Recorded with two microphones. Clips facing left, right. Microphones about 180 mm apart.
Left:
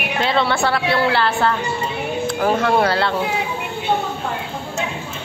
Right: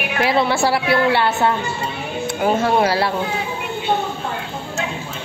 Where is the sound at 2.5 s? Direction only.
25° right (ahead or behind).